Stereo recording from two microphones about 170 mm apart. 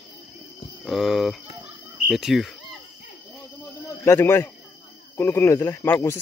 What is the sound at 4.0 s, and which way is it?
Speech, 15° left (ahead or behind).